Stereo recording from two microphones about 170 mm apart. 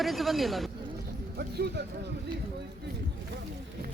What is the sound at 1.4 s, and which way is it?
Speech, 75° right (ahead or behind).